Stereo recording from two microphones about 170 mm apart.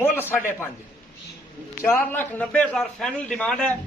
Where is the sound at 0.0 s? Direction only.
10° left (ahead or behind).